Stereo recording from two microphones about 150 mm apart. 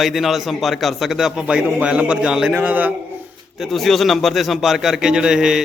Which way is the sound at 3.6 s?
Centre (ahead or behind).